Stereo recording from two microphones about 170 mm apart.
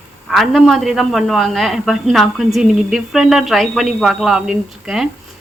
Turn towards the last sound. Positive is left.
turn(degrees=-5)  # may be behind; listen again after turning